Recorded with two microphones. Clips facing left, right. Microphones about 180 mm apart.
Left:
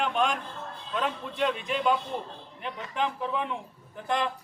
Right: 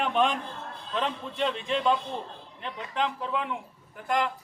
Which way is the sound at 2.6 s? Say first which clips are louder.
Even; 15° left (ahead or behind).